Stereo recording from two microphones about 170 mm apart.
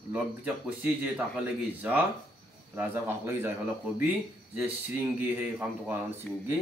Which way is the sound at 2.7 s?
15° right (ahead or behind).